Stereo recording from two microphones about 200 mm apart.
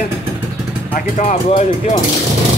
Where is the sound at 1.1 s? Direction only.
40° left (ahead or behind).